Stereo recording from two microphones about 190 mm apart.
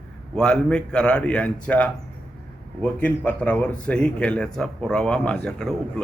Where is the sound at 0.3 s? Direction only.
5° left (ahead or behind).